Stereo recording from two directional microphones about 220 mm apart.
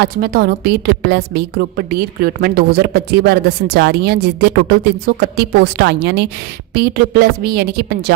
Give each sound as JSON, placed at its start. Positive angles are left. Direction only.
{"t": 0.0, "sound": "a woman's voice", "side_deg": -45}